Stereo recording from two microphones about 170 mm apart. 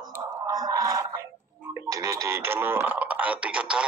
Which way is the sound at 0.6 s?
20° right (ahead or behind).